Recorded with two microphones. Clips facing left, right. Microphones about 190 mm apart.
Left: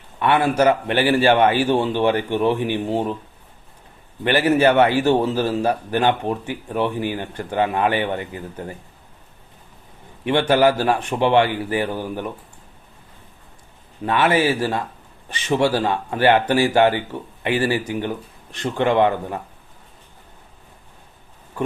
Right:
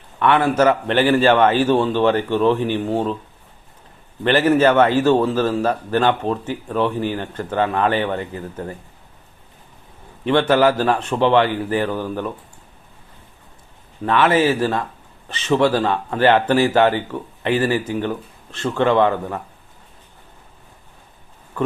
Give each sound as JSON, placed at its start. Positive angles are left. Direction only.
{"t": 0.2, "sound": "a man's voice", "side_deg": 15}
{"t": 4.2, "sound": "a man's voice", "side_deg": 10}
{"t": 10.2, "sound": "a man's voice", "side_deg": 15}
{"t": 14.0, "sound": "a man's voice", "side_deg": 15}